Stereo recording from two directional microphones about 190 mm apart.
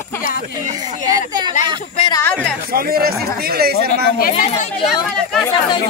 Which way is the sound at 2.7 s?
55° right (ahead or behind).